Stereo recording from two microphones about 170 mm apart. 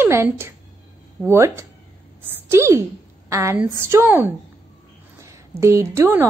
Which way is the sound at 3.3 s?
15° right (ahead or behind).